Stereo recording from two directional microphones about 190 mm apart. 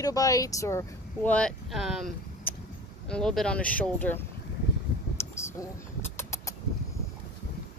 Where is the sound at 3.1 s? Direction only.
5° left (ahead or behind).